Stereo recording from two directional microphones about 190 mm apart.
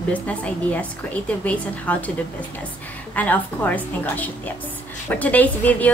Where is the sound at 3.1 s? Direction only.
10° left (ahead or behind).